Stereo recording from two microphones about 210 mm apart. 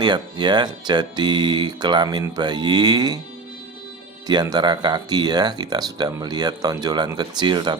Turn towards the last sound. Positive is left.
turn(degrees=-20)  # may be behind; listen again after turning